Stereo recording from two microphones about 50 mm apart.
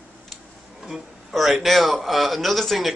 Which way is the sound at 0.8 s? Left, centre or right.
Centre.